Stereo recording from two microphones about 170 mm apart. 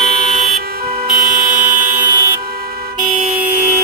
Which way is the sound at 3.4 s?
55° right (ahead or behind).